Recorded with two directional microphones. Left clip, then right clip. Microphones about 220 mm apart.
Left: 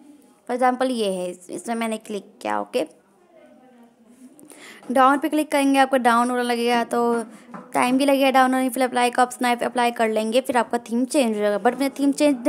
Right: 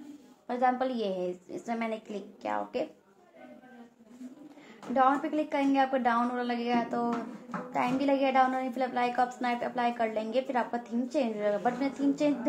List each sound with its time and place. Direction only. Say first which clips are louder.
0.5 s a woman's voice: left 8 dB; 55° left (ahead or behind)
4.9 s a woman's voice: left 9 dB; 55° left (ahead or behind)